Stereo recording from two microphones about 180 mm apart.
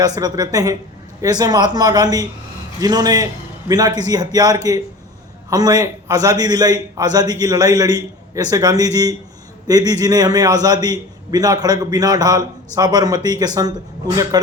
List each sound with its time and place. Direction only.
0.0 s a man's voice: 20° right (ahead or behind)